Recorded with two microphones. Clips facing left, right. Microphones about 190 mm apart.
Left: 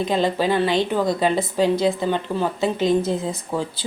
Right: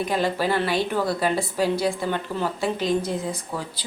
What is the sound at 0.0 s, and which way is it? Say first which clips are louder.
A woman's voice: left 3 dB; 20° left (ahead or behind).